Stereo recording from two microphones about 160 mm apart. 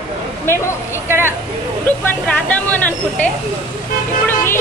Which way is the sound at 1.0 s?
15° right (ahead or behind).